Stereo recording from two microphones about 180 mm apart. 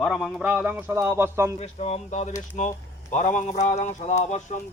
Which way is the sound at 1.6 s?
35° left (ahead or behind).